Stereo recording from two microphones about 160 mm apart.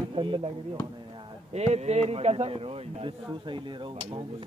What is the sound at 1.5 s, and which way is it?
A man's voice, 45° right (ahead or behind).